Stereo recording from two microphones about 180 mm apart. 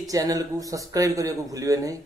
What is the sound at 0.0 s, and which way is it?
A man's voice, 20° right (ahead or behind).